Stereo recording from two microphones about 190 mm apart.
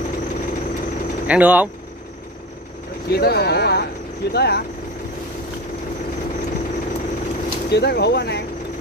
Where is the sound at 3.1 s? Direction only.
55° left (ahead or behind).